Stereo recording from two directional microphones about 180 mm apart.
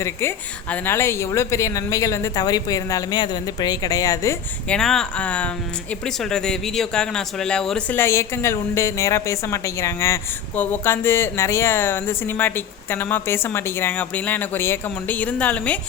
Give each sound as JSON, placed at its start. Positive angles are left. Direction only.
{"t": 0.0, "sound": "speech", "side_deg": 15}
{"t": 4.7, "sound": "speech", "side_deg": 5}